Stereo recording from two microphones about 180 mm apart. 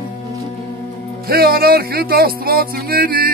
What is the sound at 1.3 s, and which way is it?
Music, 55° right (ahead or behind).